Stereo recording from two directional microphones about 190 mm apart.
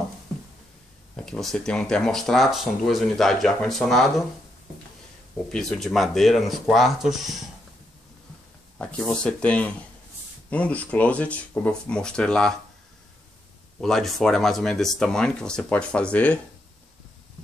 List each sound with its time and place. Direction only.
1.1 s speech: 5° left (ahead or behind)
5.5 s speech: 5° left (ahead or behind)
8.7 s speech: 5° left (ahead or behind)
13.7 s speech: 5° left (ahead or behind)